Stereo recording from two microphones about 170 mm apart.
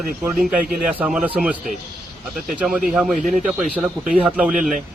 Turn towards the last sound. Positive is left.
turn(degrees=-10)  # may be behind; listen again after turning